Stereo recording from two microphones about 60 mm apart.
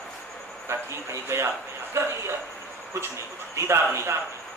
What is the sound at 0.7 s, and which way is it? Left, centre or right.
A man's voice, right.